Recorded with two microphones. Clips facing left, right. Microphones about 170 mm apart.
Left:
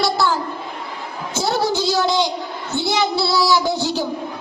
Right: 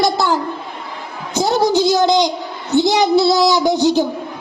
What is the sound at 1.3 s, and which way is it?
A woman's voice, 15° right (ahead or behind).